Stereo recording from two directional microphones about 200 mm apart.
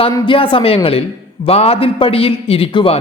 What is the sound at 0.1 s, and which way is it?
A man's voice, 20° left (ahead or behind).